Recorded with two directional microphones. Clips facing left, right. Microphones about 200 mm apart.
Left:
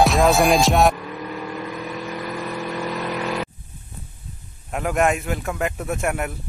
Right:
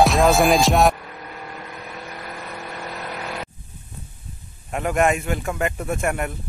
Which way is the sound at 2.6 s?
90° left.